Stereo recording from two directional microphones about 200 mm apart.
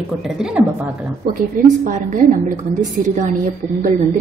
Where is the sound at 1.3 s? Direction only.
40° right (ahead or behind).